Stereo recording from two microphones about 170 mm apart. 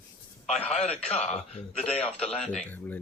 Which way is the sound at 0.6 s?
40° left (ahead or behind).